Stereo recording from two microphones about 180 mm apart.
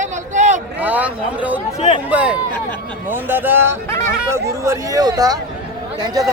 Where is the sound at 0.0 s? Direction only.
40° right (ahead or behind).